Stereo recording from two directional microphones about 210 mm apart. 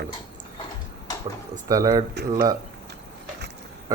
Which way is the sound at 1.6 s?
15° right (ahead or behind).